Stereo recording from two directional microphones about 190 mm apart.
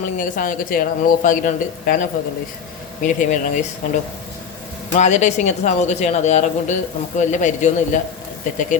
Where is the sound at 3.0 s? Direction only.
40° left (ahead or behind).